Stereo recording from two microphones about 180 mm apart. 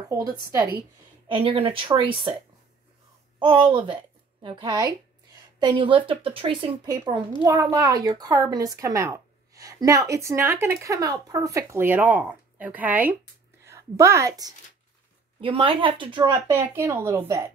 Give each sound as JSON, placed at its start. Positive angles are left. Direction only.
{"t": 0.1, "sound": "a woman's voice", "side_deg": -20}
{"t": 3.3, "sound": "a child's voice", "side_deg": -30}
{"t": 7.4, "sound": "a woman's voice", "side_deg": -15}